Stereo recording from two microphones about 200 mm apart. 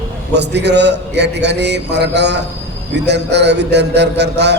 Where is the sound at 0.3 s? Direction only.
60° right (ahead or behind).